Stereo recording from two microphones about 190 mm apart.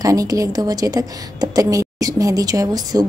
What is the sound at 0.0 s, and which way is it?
A woman's voice, 20° right (ahead or behind).